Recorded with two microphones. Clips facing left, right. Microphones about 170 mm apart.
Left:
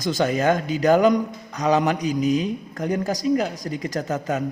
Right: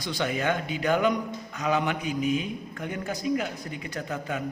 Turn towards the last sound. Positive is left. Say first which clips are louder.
# left 7 dB
turn(degrees=40)  # may be behind; listen again after turning